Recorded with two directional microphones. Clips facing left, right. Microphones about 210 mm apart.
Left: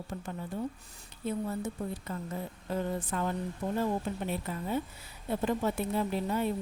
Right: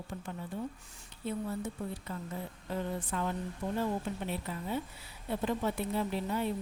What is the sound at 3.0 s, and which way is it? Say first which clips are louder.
Speech: left 2 dB; 45° left (ahead or behind).